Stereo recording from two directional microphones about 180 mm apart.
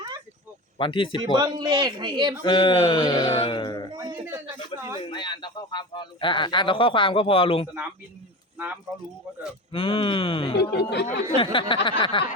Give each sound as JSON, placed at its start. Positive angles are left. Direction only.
{"t": 0.8, "sound": "speech", "side_deg": 30}
{"t": 1.2, "sound": "speech", "side_deg": -25}
{"t": 2.4, "sound": "speech", "side_deg": 25}
{"t": 3.9, "sound": "a sound", "side_deg": -25}
{"t": 5.1, "sound": "speech", "side_deg": 25}
{"t": 9.7, "sound": "speech", "side_deg": 30}
{"t": 10.8, "sound": "speech", "side_deg": 70}
{"t": 11.3, "sound": "speech", "side_deg": 30}